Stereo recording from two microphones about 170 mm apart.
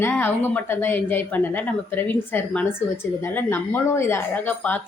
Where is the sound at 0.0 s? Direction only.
15° left (ahead or behind).